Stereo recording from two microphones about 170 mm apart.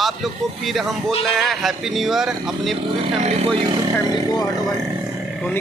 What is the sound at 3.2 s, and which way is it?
Speech, 40° right (ahead or behind).